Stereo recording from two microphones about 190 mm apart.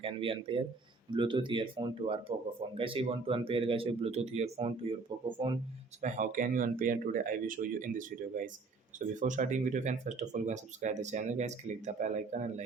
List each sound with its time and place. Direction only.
0.0 s speech: 30° right (ahead or behind)
6.0 s speech: 40° right (ahead or behind)